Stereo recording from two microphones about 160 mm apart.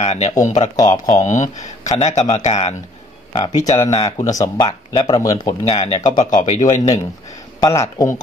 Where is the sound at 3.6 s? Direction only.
20° left (ahead or behind).